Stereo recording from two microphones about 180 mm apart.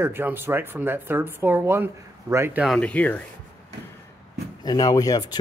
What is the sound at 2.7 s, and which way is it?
Speech, 5° left (ahead or behind).